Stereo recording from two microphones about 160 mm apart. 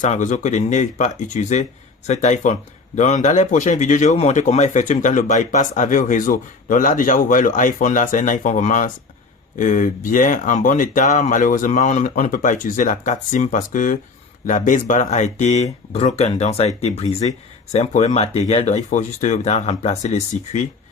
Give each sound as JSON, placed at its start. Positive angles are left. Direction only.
{"t": 0.0, "sound": "speech", "side_deg": 50}